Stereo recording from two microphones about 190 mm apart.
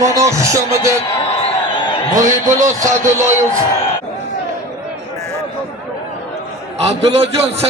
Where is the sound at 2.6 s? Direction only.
15° right (ahead or behind).